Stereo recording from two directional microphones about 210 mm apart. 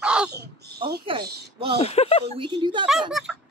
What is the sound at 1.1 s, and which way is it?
Speech, 25° right (ahead or behind).